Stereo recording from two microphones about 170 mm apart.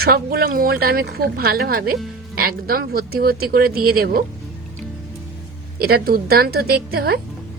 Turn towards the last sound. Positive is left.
turn(degrees=-65)  # may be behind; listen again after turning